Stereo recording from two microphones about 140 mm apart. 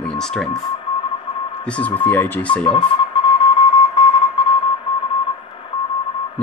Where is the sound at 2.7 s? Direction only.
40° left (ahead or behind).